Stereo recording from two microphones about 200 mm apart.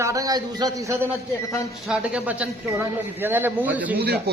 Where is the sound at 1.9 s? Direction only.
5° right (ahead or behind).